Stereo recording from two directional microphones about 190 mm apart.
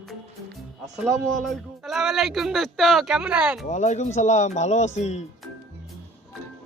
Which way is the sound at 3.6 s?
40° left (ahead or behind).